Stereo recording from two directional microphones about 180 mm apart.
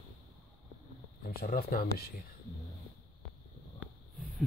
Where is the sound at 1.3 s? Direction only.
55° left (ahead or behind).